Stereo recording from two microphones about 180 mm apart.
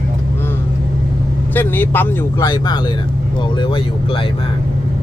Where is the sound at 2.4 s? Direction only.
25° left (ahead or behind).